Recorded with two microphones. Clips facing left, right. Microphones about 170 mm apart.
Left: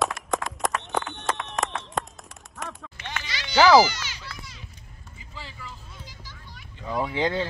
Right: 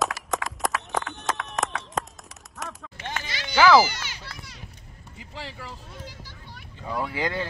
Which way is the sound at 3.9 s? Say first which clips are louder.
Left 2 dB; 55° right (ahead or behind).